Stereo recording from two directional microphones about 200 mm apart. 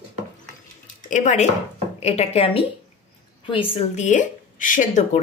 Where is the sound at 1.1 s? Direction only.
35° left (ahead or behind).